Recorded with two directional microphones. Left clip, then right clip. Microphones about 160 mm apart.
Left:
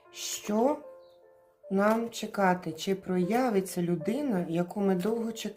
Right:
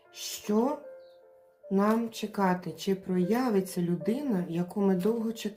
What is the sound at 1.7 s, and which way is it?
Speech, 45° left (ahead or behind).